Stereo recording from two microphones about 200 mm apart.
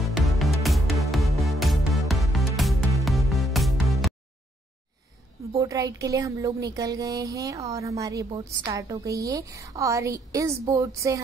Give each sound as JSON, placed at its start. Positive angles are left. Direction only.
{"t": 0.0, "sound": "music", "side_deg": 0}
{"t": 5.6, "sound": "speech", "side_deg": -15}